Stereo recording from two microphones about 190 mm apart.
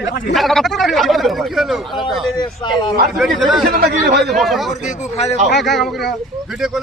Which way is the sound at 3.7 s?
55° right (ahead or behind).